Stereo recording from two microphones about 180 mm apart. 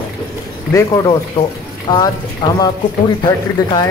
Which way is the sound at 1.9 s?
20° left (ahead or behind).